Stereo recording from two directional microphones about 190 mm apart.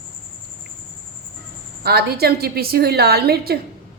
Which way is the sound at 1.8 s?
55° right (ahead or behind).